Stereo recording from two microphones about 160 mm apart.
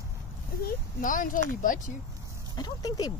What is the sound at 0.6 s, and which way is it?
Speech, 55° left (ahead or behind).